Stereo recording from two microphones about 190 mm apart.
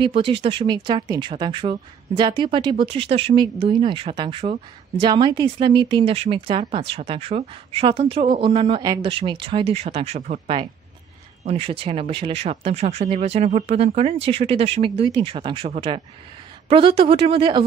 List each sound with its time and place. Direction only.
0.0 s speech: 30° right (ahead or behind)